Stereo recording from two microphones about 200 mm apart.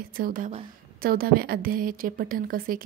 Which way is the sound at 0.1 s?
45° right (ahead or behind).